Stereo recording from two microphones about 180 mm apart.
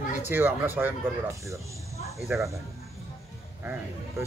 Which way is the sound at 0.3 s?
10° right (ahead or behind).